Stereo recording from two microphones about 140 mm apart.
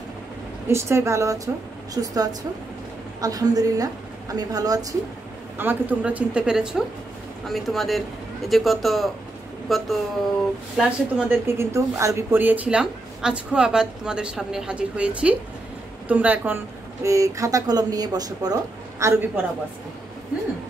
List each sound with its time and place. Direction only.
0.7 s a woman's voice: 20° right (ahead or behind)
5.6 s a woman's voice: 15° right (ahead or behind)
11.4 s a woman's voice: 20° right (ahead or behind)